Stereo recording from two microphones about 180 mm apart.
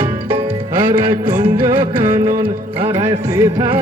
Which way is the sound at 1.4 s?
15° right (ahead or behind).